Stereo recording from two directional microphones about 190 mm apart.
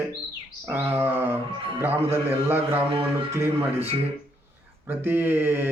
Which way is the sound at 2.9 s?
30° right (ahead or behind).